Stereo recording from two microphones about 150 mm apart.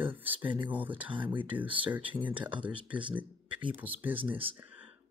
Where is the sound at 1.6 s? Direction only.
10° right (ahead or behind).